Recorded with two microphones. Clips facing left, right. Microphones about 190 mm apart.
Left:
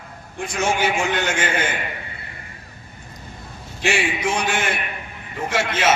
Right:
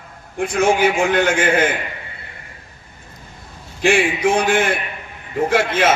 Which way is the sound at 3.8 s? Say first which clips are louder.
Right 6 dB; 55° right (ahead or behind).